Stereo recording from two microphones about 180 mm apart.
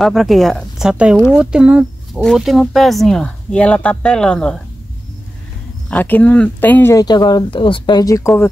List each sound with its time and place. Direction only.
0.0 s speech: centre (ahead or behind)
5.9 s speech: 10° left (ahead or behind)